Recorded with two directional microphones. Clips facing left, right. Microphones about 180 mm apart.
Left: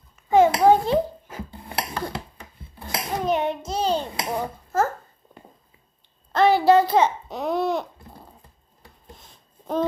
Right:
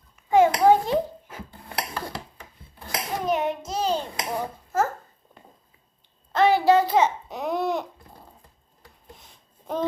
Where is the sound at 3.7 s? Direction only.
30° left (ahead or behind).